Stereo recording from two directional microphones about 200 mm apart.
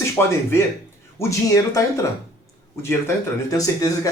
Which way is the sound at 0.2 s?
15° left (ahead or behind).